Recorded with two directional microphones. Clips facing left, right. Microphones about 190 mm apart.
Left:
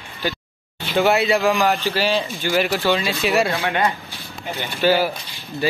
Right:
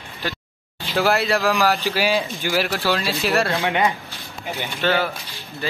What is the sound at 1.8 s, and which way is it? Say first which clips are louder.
Speech: even; 10° right (ahead or behind).